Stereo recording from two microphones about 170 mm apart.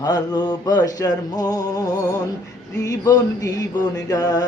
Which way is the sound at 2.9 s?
20° left (ahead or behind).